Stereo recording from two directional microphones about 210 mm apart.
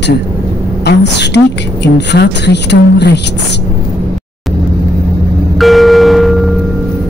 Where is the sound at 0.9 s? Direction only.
55° left (ahead or behind).